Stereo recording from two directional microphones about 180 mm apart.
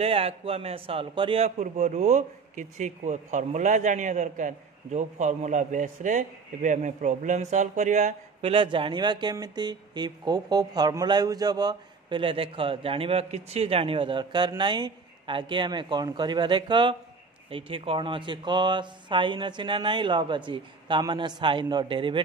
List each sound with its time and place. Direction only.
0.0 s a man's voice: 35° right (ahead or behind)